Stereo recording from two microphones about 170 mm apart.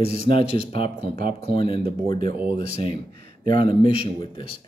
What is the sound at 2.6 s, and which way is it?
A man's voice, 60° right (ahead or behind).